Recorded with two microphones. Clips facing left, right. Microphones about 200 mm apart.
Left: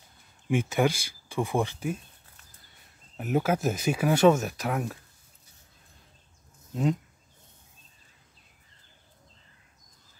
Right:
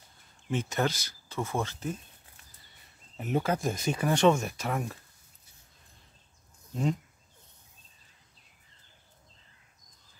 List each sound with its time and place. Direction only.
0.5 s speech: 10° left (ahead or behind)
3.2 s speech: 5° left (ahead or behind)
6.7 s speech: centre (ahead or behind)